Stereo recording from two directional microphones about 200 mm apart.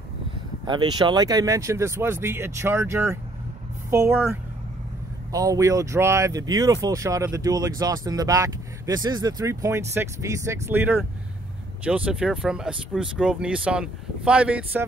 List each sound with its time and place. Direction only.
0.7 s speech: 20° right (ahead or behind)